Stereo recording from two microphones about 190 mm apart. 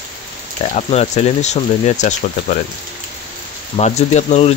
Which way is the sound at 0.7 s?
35° left (ahead or behind).